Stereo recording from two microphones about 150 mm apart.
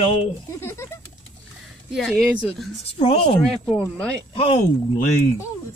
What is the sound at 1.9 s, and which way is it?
Speech, centre (ahead or behind).